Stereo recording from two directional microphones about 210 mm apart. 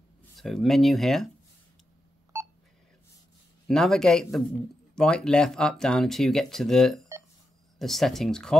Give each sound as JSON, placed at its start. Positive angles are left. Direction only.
{"t": 0.4, "sound": "speech", "side_deg": 0}
{"t": 2.3, "sound": "telephone dialing", "side_deg": -15}
{"t": 3.6, "sound": "speech", "side_deg": 0}